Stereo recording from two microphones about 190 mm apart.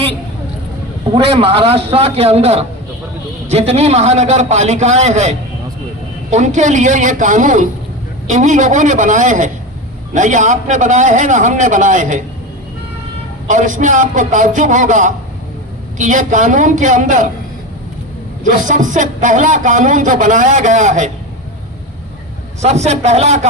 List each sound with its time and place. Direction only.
1.1 s speech: 30° right (ahead or behind)
6.3 s speech: 40° right (ahead or behind)
13.5 s speech: 40° right (ahead or behind)
18.4 s speech: 40° right (ahead or behind)
22.6 s speech: 35° right (ahead or behind)